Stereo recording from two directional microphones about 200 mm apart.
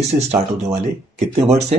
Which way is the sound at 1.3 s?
35° right (ahead or behind).